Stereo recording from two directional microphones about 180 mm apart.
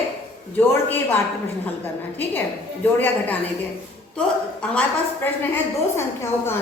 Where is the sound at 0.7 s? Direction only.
10° left (ahead or behind).